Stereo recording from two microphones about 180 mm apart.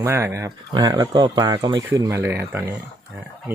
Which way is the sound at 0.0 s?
15° right (ahead or behind).